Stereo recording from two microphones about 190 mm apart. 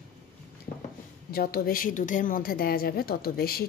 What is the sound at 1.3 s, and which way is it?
A woman's voice, 55° left (ahead or behind).